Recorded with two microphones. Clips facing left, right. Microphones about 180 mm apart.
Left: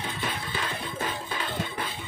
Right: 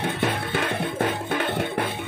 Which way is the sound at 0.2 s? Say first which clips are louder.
Right 7 dB; 65° right (ahead or behind).